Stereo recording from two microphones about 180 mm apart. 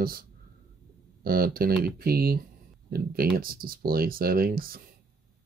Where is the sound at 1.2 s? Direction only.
55° right (ahead or behind).